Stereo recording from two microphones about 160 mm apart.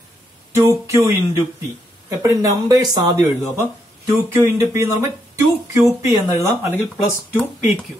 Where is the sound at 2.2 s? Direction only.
20° right (ahead or behind).